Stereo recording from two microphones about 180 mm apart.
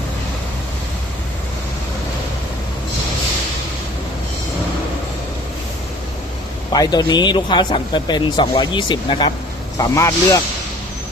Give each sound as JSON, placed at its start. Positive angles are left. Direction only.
{"t": 6.7, "sound": "speech", "side_deg": 20}